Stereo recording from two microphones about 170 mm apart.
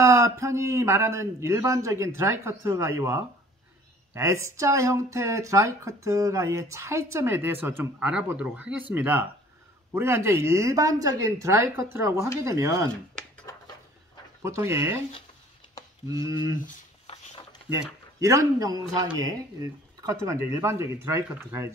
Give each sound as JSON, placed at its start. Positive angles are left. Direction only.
{"t": 0.0, "sound": "speech", "side_deg": -15}
{"t": 14.4, "sound": "speech", "side_deg": -15}
{"t": 16.1, "sound": "speech", "side_deg": -20}
{"t": 18.2, "sound": "speech", "side_deg": -20}